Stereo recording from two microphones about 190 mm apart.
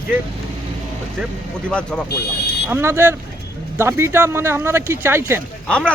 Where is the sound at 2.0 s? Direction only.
60° left (ahead or behind).